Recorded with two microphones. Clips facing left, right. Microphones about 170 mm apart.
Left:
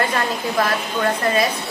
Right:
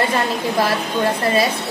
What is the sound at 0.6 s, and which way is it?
Speech, 30° right (ahead or behind).